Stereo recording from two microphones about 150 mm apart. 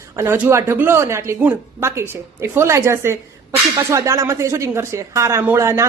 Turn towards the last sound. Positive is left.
turn(degrees=-20)  # may be behind; listen again after turning